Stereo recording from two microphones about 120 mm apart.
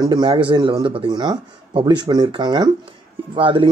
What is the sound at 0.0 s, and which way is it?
Speech, 40° right (ahead or behind).